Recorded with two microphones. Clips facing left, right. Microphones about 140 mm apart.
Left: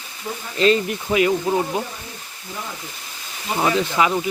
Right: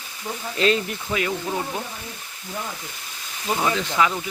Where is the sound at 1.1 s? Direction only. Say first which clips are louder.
Left 7 dB; 20° left (ahead or behind).